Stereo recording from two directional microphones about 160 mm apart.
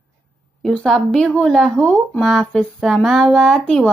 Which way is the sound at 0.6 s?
5° left (ahead or behind).